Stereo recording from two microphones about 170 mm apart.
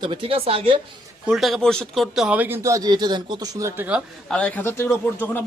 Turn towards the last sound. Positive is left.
turn(degrees=10)  # may be behind; listen again after turning